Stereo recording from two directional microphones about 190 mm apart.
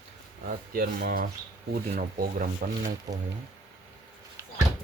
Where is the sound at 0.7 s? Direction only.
50° right (ahead or behind).